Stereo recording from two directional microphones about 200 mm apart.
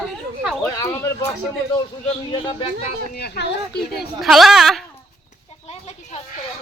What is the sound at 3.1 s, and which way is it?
Speech, 50° left (ahead or behind).